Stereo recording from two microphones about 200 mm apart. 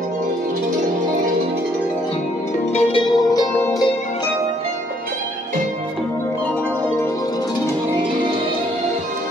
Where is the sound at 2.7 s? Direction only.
30° left (ahead or behind).